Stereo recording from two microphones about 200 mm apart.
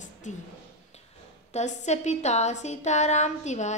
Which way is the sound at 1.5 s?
35° left (ahead or behind).